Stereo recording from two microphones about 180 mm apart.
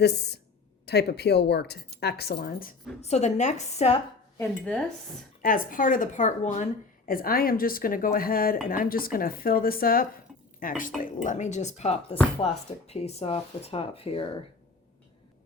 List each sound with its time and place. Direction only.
0.0 s a woman's voice: 70° left (ahead or behind)
3.0 s speech: 40° left (ahead or behind)
4.4 s speech: 5° left (ahead or behind)
5.4 s speech: 50° left (ahead or behind); by 14.3 s 30° left (ahead or behind)